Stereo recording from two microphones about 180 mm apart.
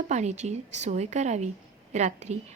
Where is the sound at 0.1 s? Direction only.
40° right (ahead or behind).